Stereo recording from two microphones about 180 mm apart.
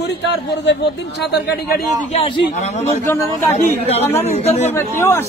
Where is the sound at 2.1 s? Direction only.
30° left (ahead or behind).